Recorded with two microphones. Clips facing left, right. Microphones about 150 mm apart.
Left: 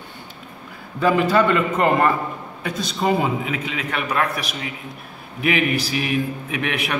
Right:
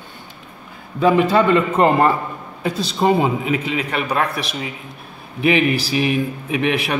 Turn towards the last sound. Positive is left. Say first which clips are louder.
# right 5 dB
turn(degrees=-30)  # may be behind; listen again after turning